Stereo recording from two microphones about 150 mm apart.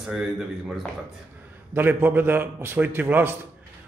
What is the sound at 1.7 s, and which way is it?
A man's voice, 15° right (ahead or behind).